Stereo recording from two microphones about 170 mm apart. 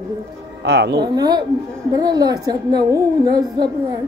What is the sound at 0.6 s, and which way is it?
Speech, 85° right.